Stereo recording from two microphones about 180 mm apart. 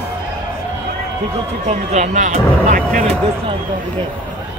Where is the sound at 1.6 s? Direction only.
40° right (ahead or behind).